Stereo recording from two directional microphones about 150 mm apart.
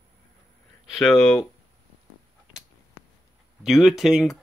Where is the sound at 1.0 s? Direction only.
5° left (ahead or behind).